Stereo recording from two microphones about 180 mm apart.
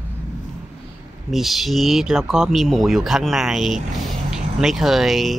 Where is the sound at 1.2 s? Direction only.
Centre (ahead or behind).